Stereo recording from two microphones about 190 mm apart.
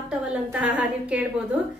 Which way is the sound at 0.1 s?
5° right (ahead or behind).